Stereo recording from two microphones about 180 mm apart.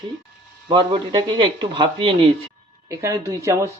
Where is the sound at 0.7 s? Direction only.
25° right (ahead or behind).